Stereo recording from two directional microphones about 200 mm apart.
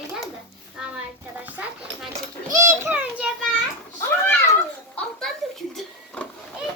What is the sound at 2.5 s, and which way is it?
Children playing, 15° right (ahead or behind).